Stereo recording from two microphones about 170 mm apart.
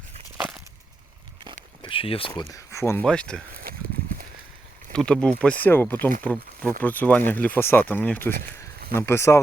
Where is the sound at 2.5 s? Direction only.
15° left (ahead or behind).